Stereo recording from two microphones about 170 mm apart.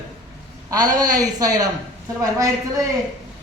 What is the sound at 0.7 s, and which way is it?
A man's voice, 25° right (ahead or behind).